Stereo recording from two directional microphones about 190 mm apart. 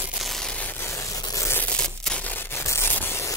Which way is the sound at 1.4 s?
10° left (ahead or behind).